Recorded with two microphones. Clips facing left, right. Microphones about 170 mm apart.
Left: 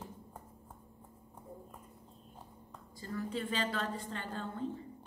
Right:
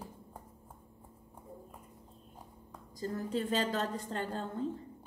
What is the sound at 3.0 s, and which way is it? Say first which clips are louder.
A woman's voice: right 3 dB; 40° right (ahead or behind).